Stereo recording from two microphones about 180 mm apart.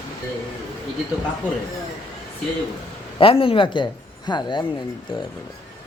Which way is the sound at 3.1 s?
30° left (ahead or behind).